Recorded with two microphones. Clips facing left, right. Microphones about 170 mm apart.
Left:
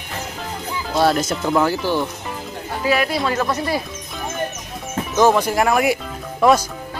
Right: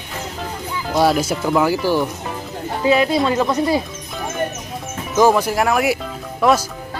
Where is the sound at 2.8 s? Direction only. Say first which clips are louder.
Right 4 dB; 25° right (ahead or behind).